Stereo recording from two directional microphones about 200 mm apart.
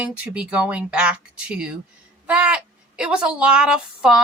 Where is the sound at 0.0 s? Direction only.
5° right (ahead or behind).